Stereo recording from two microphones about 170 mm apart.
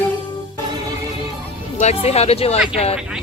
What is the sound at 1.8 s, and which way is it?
Speech, 40° left (ahead or behind).